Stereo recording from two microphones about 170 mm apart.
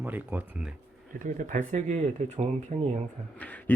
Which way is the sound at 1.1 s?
50° right (ahead or behind).